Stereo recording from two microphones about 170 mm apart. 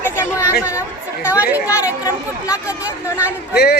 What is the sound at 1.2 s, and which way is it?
Speech, 10° right (ahead or behind).